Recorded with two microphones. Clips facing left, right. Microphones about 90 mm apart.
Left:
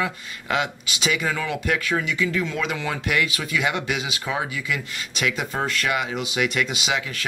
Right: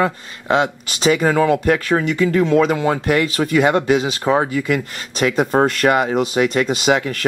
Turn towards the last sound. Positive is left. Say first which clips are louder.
# right 10 dB
turn(degrees=-45)  # may be behind; listen again after turning